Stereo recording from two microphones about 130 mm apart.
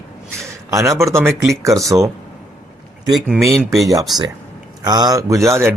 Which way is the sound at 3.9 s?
30° right (ahead or behind).